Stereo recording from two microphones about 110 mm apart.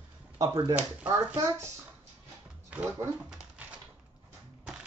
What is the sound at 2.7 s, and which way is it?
Speech, 15° right (ahead or behind).